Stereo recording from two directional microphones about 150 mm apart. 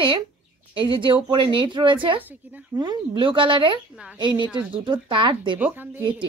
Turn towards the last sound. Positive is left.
turn(degrees=-15)  # may be behind; listen again after turning